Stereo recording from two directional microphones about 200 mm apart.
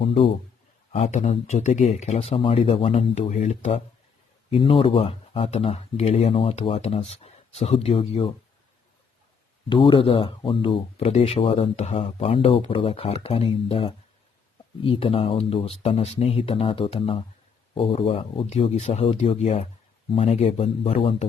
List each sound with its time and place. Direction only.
0.0 s a man's voice: 30° left (ahead or behind)
9.6 s speech: 25° left (ahead or behind)